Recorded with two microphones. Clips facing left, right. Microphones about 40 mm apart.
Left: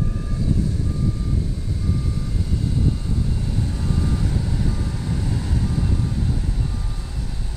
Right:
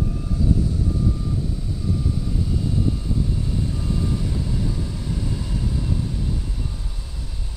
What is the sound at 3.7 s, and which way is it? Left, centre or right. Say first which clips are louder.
Reversing beeps: left 1 dB; left.